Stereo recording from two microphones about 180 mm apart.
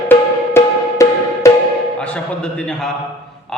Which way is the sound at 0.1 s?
15° left (ahead or behind).